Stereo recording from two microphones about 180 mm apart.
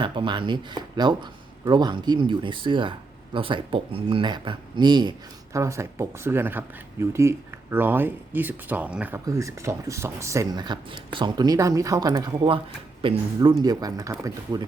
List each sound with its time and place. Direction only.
0.0 s speech: 25° right (ahead or behind)